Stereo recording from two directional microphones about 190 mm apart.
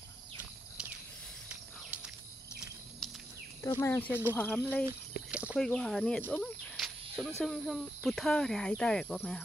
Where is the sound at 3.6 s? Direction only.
15° left (ahead or behind).